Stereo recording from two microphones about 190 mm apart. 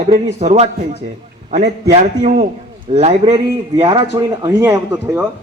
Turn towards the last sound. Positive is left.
turn(degrees=-15)  # may be behind; listen again after turning